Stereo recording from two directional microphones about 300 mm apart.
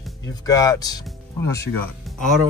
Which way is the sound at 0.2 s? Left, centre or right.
Centre.